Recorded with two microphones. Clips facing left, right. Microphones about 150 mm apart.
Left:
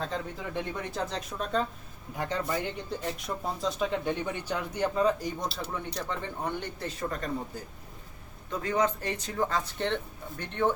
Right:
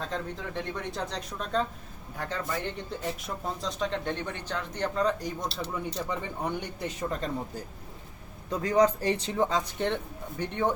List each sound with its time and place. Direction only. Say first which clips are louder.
0.0 s speech: even; 5° left (ahead or behind)
2.1 s speech: left 2 dB; 15° left (ahead or behind)
2.6 s speech: even; centre (ahead or behind)
6.1 s speech: right 1 dB; 15° right (ahead or behind)
8.6 s speech: right 5 dB; 35° right (ahead or behind)
9.5 s speech: right 2 dB; 15° right (ahead or behind)